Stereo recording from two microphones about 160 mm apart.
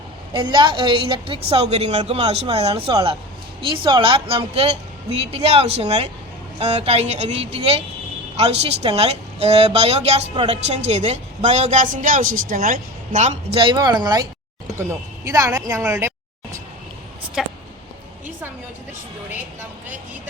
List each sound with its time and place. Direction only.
0.3 s a woman's voice: 30° right (ahead or behind); by 13.6 s 50° right (ahead or behind)
13.6 s speech: 25° right (ahead or behind)
17.4 s speech: 5° right (ahead or behind)